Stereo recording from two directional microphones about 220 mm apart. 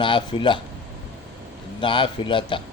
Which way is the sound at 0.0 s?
20° left (ahead or behind).